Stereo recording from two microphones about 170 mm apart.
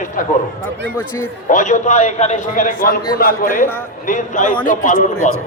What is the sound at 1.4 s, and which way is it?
Speech, 50° left (ahead or behind).